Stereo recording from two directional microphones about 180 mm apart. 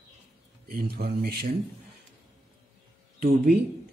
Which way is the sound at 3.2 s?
55° right (ahead or behind).